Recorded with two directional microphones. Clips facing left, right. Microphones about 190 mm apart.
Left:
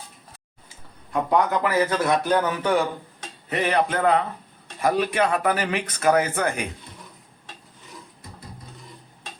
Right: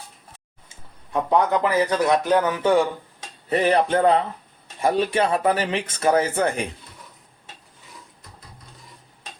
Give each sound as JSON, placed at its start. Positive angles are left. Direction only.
{"t": 1.3, "sound": "speech", "side_deg": -20}
{"t": 3.5, "sound": "a sound", "side_deg": -35}
{"t": 4.8, "sound": "speech", "side_deg": -30}